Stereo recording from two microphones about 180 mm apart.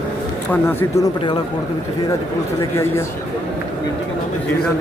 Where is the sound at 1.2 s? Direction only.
25° left (ahead or behind).